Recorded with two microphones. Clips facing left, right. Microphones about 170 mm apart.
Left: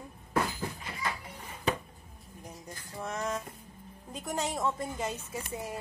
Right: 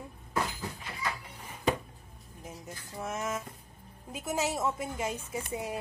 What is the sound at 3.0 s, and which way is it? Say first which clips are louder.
Speech: even; 5° right (ahead or behind).